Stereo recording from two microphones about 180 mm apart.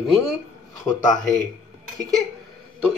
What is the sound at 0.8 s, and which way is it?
Speech, 20° left (ahead or behind).